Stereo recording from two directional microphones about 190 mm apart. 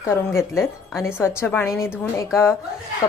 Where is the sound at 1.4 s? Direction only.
10° left (ahead or behind).